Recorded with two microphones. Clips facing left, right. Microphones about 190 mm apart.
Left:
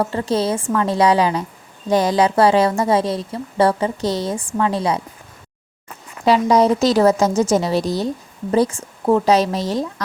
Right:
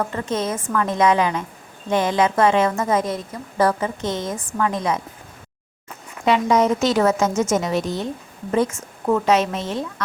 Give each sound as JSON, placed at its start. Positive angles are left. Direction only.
{"t": 0.0, "sound": "a woman's voice", "side_deg": 30}
{"t": 6.2, "sound": "a woman's voice", "side_deg": 35}